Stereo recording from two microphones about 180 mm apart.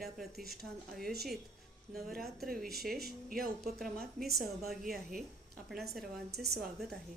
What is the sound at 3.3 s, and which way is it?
Speech, 55° right (ahead or behind).